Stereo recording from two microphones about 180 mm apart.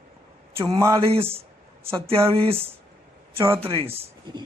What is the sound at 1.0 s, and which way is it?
Speech, 30° right (ahead or behind).